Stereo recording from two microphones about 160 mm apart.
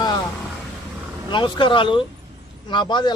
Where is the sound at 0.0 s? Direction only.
25° left (ahead or behind).